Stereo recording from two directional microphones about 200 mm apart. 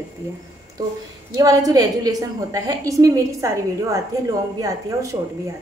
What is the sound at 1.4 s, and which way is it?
A woman's voice, 15° right (ahead or behind).